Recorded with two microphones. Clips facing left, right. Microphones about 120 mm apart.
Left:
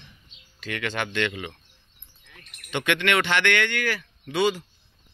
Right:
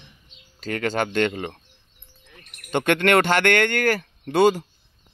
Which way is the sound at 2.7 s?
45° right (ahead or behind).